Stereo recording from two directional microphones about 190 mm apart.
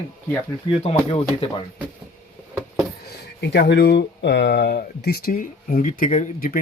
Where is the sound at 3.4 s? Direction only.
60° left (ahead or behind).